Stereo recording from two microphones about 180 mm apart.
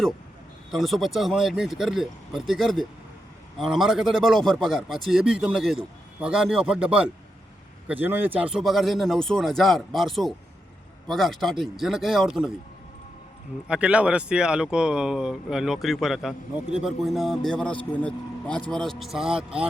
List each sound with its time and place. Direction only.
0.7 s a man's voice: centre (ahead or behind)
13.7 s a man's voice: 5° right (ahead or behind)